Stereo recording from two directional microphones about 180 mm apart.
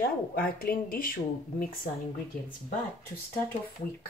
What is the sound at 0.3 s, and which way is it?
Speech, 55° left (ahead or behind).